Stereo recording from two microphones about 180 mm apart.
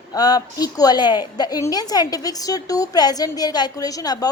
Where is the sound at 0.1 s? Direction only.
20° left (ahead or behind).